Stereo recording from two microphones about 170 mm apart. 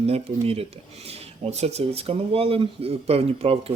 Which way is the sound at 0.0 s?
35° right (ahead or behind).